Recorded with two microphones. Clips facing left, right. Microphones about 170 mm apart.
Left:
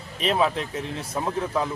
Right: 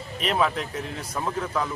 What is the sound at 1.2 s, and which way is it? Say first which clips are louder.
Speech: left 2 dB; 20° left (ahead or behind).